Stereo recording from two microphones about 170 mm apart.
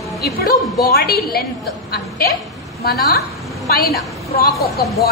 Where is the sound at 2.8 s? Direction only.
65° left (ahead or behind).